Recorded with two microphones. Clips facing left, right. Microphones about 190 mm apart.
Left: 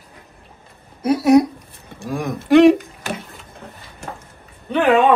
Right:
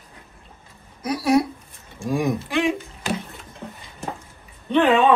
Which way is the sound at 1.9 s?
55° left (ahead or behind).